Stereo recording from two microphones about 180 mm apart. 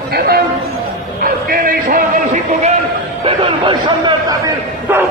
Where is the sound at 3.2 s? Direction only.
25° right (ahead or behind).